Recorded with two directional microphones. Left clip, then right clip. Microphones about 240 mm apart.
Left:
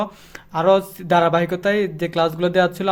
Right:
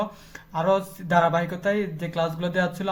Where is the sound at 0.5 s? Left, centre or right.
Left.